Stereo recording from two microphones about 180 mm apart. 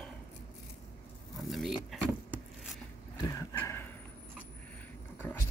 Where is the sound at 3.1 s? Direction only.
20° left (ahead or behind).